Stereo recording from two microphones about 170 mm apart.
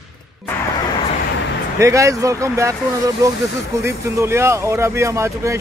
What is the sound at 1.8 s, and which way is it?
Speech, 20° right (ahead or behind).